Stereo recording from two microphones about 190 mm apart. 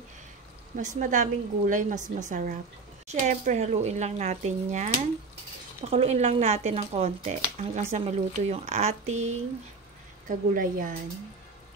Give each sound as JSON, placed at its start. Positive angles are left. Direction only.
{"t": 0.7, "sound": "a woman's voice", "side_deg": -40}